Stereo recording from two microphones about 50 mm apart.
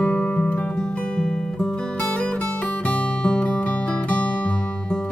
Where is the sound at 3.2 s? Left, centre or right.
Left.